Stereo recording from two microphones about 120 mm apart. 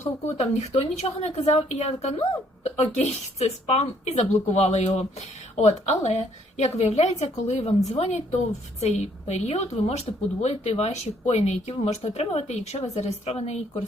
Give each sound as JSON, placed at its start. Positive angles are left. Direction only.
{"t": 0.0, "sound": "speech", "side_deg": 65}
{"t": 5.5, "sound": "speech", "side_deg": 75}